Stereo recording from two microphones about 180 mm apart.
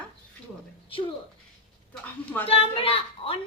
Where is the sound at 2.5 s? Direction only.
35° left (ahead or behind).